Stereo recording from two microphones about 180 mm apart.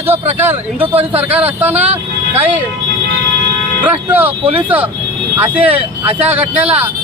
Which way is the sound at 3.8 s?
10° right (ahead or behind).